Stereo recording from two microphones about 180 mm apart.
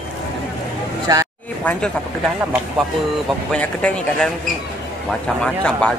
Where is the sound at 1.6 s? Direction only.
10° left (ahead or behind).